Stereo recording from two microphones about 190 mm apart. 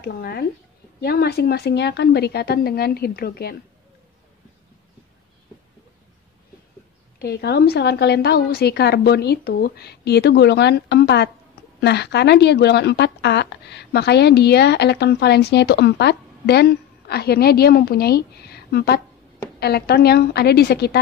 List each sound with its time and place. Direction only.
0.0 s a woman's voice: 55° left (ahead or behind)
7.2 s a woman's voice: 60° left (ahead or behind)